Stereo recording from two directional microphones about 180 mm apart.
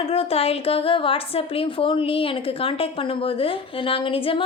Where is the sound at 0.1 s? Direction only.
35° left (ahead or behind).